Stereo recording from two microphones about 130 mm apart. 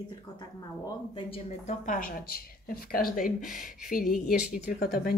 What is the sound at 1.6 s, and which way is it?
Speech, 70° left (ahead or behind).